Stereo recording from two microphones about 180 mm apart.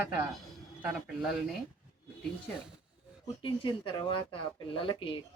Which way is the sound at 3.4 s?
30° left (ahead or behind).